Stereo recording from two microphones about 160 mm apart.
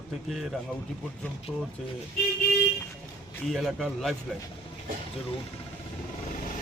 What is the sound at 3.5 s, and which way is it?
Speech, centre (ahead or behind).